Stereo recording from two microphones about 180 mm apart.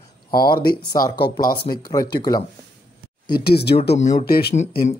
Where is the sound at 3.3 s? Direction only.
60° left (ahead or behind).